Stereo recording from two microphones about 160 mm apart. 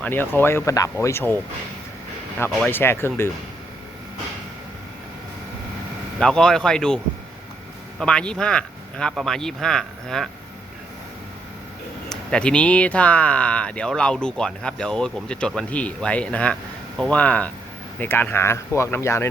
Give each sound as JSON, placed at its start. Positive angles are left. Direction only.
{"t": 0.0, "sound": "speech", "side_deg": 15}
{"t": 2.6, "sound": "speech", "side_deg": 15}
{"t": 6.1, "sound": "speech", "side_deg": 5}
{"t": 12.0, "sound": "speech", "side_deg": 5}